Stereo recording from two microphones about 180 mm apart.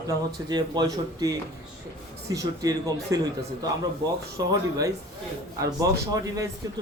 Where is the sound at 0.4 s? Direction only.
25° right (ahead or behind).